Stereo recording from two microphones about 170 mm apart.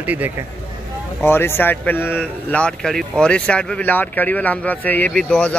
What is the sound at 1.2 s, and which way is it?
A man's voice, 15° left (ahead or behind).